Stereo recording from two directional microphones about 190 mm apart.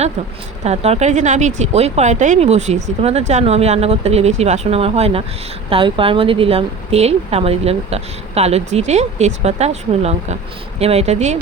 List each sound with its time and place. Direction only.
0.6 s a woman's voice: 35° right (ahead or behind)